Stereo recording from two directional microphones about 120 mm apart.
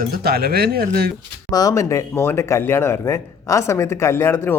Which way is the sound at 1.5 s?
30° left (ahead or behind).